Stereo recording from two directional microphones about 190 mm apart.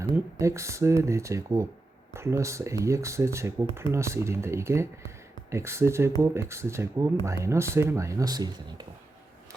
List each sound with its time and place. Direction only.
0.0 s speech: 15° right (ahead or behind)